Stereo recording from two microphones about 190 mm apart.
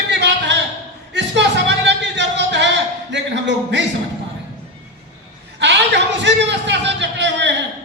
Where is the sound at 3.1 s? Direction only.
70° right (ahead or behind).